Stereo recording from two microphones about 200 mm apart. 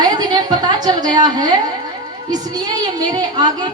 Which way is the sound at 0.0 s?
20° right (ahead or behind).